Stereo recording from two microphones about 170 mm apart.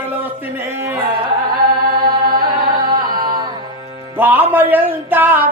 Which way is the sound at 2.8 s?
25° right (ahead or behind).